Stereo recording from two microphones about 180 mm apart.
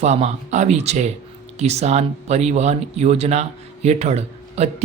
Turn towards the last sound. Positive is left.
turn(degrees=-35)  # may be behind; listen again after turning